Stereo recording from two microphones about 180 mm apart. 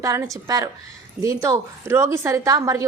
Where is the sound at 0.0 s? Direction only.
20° right (ahead or behind).